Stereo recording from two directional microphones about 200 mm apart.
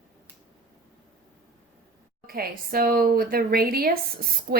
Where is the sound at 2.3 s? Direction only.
45° right (ahead or behind).